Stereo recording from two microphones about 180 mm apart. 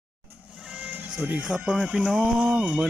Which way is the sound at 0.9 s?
5° right (ahead or behind).